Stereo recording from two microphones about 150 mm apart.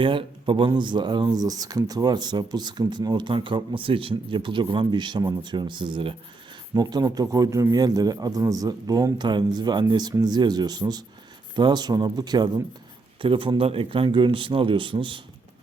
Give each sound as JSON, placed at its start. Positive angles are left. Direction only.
{"t": 0.0, "sound": "a man's voice", "side_deg": -35}